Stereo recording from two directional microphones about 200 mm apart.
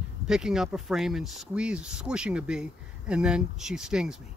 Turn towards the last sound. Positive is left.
turn(degrees=-5)  # may be behind; listen again after turning